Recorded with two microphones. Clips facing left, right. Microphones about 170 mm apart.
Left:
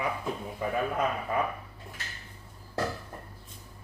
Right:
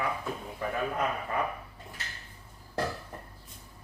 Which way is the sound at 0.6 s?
15° left (ahead or behind).